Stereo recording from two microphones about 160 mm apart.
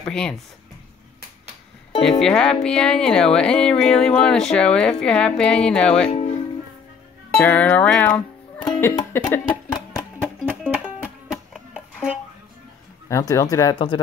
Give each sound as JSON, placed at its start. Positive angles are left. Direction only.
{"t": 0.0, "sound": "speech", "side_deg": 5}
{"t": 2.0, "sound": "speech", "side_deg": 5}
{"t": 7.3, "sound": "music", "side_deg": 10}
{"t": 9.5, "sound": "music", "side_deg": 25}
{"t": 10.1, "sound": "music", "side_deg": -10}
{"t": 13.1, "sound": "speech", "side_deg": 20}